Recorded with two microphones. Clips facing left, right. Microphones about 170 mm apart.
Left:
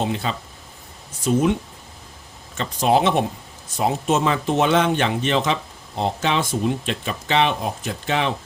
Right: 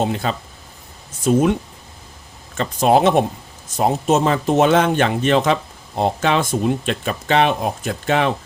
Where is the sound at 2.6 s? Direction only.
50° right (ahead or behind).